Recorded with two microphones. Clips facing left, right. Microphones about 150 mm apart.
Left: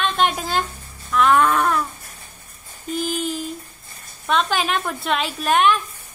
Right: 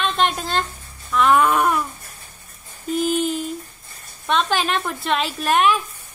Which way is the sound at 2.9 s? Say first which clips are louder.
Right 4 dB; centre (ahead or behind).